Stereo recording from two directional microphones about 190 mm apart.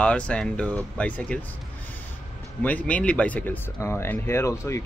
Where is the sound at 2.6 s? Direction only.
5° left (ahead or behind).